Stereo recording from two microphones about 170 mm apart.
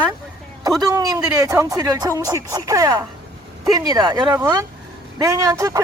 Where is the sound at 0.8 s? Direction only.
20° right (ahead or behind).